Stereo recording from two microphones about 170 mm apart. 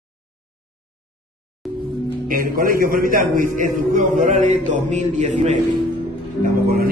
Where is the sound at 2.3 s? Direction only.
55° right (ahead or behind).